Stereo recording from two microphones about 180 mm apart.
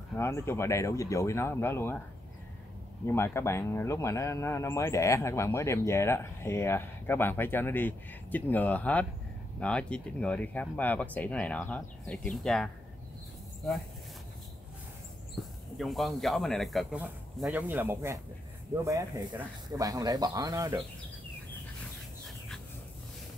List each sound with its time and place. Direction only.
0.2 s speech: 15° left (ahead or behind)
3.1 s speech: 15° left (ahead or behind)
15.8 s speech: centre (ahead or behind); by 20.8 s 20° right (ahead or behind)